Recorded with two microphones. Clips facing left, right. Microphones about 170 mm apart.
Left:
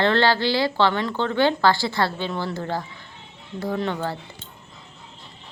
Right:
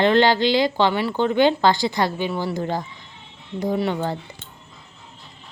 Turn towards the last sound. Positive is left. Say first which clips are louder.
# right 3 dB
turn(degrees=-15)  # may be behind; listen again after turning